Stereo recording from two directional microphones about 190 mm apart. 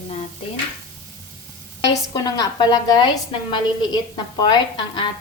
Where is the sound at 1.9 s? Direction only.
20° left (ahead or behind).